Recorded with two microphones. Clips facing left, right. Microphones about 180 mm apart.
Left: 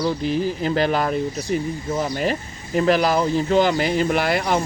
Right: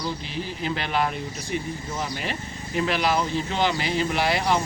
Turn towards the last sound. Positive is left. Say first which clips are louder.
# left 3 dB
turn(degrees=50)  # may be behind; listen again after turning